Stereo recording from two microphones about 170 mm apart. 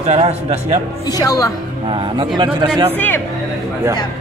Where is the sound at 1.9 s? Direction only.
30° right (ahead or behind).